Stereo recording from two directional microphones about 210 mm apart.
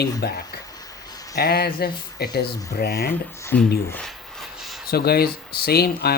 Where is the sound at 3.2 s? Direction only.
10° left (ahead or behind).